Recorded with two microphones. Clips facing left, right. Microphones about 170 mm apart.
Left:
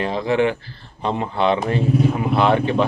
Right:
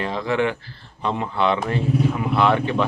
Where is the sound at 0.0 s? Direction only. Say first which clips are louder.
Left 3 dB; 20° left (ahead or behind).